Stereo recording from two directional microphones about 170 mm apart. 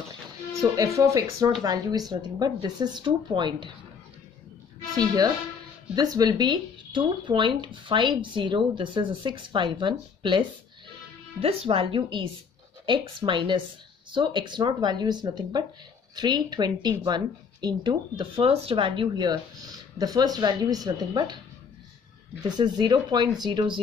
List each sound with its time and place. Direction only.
0.6 s a woman's voice: 20° right (ahead or behind)
4.9 s a woman's voice: 25° right (ahead or behind)
22.4 s a woman's voice: 25° right (ahead or behind)